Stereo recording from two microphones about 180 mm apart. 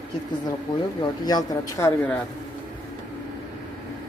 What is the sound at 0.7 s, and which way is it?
Speech, 25° left (ahead or behind).